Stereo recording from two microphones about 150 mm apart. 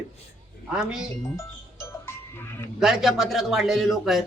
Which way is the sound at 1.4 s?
20° left (ahead or behind).